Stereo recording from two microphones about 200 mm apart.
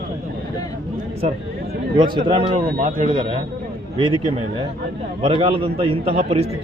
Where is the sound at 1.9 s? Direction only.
25° right (ahead or behind).